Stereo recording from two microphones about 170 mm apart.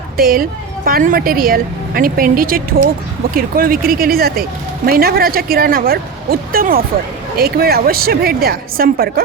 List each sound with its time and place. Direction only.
0.2 s a woman's voice: 60° right (ahead or behind)